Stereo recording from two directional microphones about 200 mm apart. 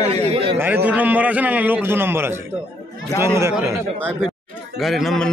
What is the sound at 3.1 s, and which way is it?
Speech, 15° left (ahead or behind).